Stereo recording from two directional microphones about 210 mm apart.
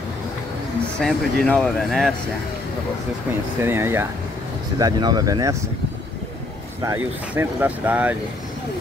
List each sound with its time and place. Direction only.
1.0 s speech: 5° left (ahead or behind)
3.6 s speech: 10° right (ahead or behind)
6.8 s speech: 15° right (ahead or behind)